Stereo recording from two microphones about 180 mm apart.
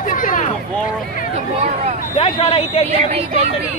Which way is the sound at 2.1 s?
35° left (ahead or behind).